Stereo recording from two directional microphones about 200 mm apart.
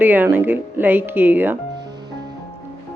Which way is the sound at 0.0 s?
10° right (ahead or behind).